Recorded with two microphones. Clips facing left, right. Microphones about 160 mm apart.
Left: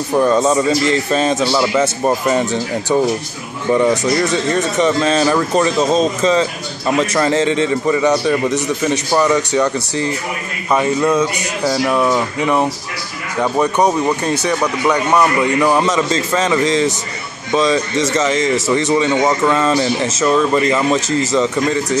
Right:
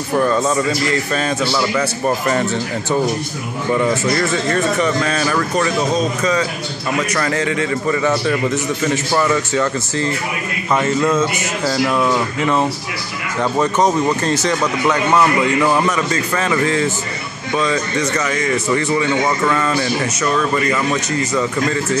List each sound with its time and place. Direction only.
0.2 s speech: 20° left (ahead or behind)
3.7 s a man's voice: 15° left (ahead or behind)